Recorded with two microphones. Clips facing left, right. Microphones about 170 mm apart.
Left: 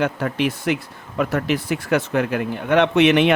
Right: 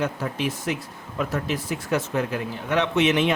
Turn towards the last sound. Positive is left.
turn(degrees=65)  # may be behind; listen again after turning